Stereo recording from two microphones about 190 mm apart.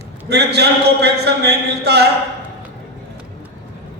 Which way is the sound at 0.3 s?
60° right (ahead or behind).